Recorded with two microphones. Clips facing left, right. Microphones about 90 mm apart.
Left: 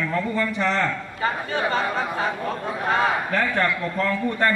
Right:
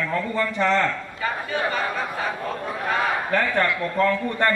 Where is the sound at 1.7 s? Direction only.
30° left (ahead or behind).